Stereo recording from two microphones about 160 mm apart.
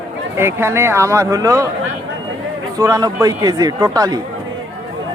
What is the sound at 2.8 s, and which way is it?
Speech, 25° right (ahead or behind).